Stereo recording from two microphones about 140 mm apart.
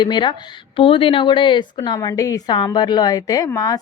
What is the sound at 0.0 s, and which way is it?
A woman's voice, 35° left (ahead or behind).